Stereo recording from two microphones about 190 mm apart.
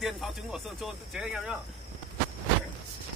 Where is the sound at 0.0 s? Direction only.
Centre (ahead or behind).